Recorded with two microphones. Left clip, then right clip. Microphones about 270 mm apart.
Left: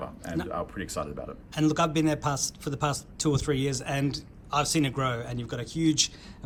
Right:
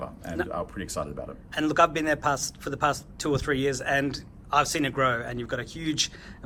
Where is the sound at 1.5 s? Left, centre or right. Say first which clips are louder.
Right 3 dB; centre.